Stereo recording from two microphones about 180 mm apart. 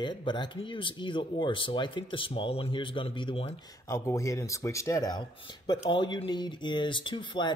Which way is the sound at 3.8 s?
15° left (ahead or behind).